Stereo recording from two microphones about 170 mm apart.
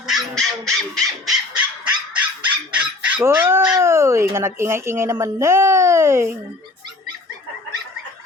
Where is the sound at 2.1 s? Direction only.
10° right (ahead or behind).